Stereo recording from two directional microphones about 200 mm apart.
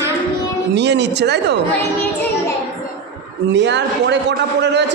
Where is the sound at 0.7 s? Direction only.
60° right (ahead or behind).